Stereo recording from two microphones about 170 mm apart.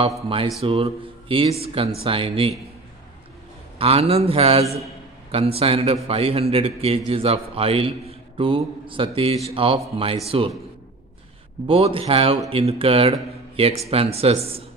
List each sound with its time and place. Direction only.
0.6 s a man's voice: 35° right (ahead or behind)
3.7 s a man's voice: 35° right (ahead or behind)
11.6 s a man's voice: 30° right (ahead or behind)